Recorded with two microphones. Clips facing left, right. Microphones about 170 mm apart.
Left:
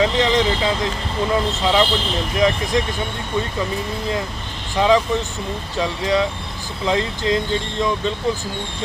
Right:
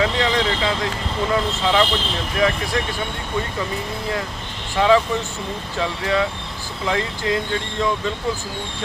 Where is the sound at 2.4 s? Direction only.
20° left (ahead or behind).